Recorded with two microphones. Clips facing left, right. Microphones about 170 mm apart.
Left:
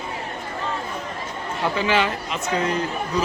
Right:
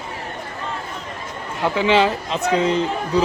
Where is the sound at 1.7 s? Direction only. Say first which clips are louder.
Right 5 dB; 15° right (ahead or behind).